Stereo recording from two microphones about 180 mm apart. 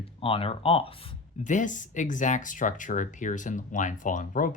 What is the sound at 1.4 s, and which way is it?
Speech, 45° left (ahead or behind).